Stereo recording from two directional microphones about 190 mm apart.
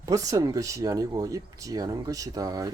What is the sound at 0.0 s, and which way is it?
Speech, 20° right (ahead or behind).